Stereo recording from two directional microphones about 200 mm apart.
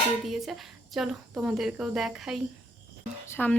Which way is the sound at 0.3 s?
Centre (ahead or behind).